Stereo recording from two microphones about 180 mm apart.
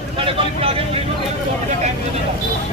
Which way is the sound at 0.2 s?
35° right (ahead or behind).